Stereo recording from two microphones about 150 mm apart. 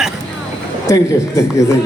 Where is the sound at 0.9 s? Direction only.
20° left (ahead or behind).